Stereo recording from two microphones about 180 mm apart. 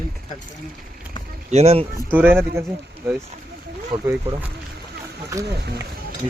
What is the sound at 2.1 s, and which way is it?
Speech, 10° right (ahead or behind).